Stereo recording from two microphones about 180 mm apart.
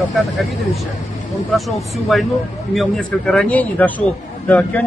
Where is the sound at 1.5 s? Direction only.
Centre (ahead or behind).